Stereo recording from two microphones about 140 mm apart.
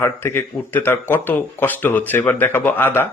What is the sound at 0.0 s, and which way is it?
A man's voice, 15° left (ahead or behind).